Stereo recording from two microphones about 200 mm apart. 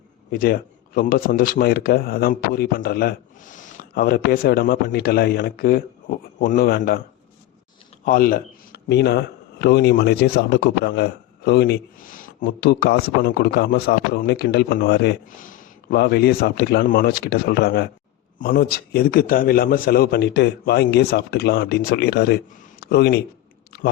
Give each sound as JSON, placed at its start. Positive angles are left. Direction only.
{"t": 0.3, "sound": "speech", "side_deg": 45}
{"t": 8.0, "sound": "speech", "side_deg": 45}
{"t": 23.7, "sound": "a sound", "side_deg": 55}